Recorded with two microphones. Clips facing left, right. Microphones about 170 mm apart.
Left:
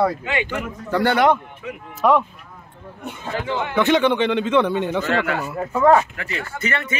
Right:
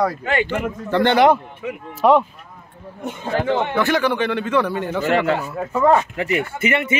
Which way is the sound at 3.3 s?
55° right (ahead or behind).